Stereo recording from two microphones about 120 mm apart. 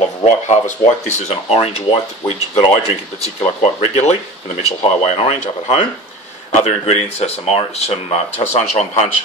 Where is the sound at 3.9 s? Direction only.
65° left (ahead or behind).